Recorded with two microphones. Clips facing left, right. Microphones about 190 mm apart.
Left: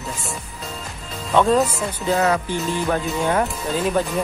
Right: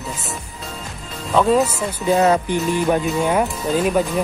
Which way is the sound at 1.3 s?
5° right (ahead or behind).